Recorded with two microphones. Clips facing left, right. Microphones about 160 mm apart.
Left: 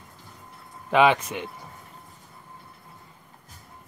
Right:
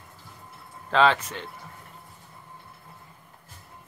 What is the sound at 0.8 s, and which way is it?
Speech, 15° left (ahead or behind).